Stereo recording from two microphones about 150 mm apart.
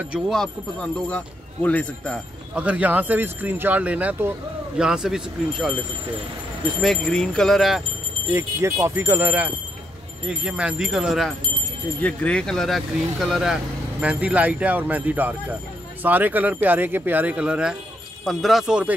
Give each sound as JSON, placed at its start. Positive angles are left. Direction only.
{"t": 0.1, "sound": "speech", "side_deg": 5}
{"t": 2.5, "sound": "speech", "side_deg": -10}
{"t": 6.8, "sound": "speech", "side_deg": 5}
{"t": 8.3, "sound": "speech", "side_deg": -20}
{"t": 12.0, "sound": "speech", "side_deg": 10}